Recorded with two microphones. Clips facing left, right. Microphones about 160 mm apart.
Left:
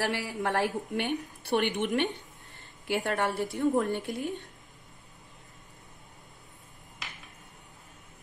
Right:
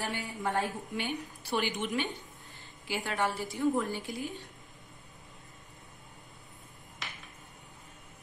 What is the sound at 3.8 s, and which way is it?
Speech, 60° left (ahead or behind).